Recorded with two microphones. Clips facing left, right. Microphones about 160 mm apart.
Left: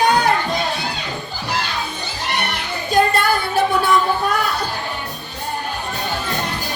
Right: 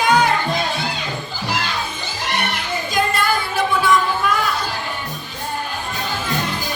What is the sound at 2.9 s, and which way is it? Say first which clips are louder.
Music: left 4 dB; 60° left (ahead or behind).